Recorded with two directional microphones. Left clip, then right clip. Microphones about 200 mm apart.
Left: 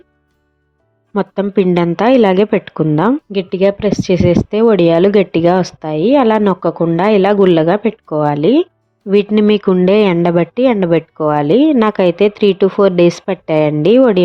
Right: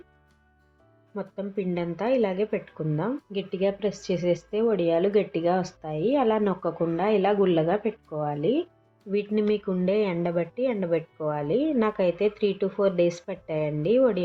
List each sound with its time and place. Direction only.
1.1 s a woman's voice: 60° left (ahead or behind)